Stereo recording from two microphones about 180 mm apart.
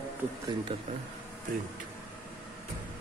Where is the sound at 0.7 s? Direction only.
25° right (ahead or behind).